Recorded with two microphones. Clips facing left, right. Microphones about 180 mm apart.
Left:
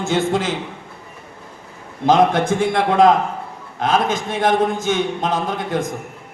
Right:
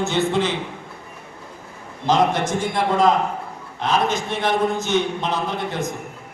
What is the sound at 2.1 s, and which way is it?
Speech, 55° left (ahead or behind).